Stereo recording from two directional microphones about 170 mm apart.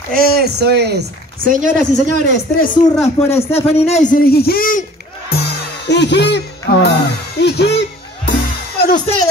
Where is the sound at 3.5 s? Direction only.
35° left (ahead or behind); by 6.9 s 80° left.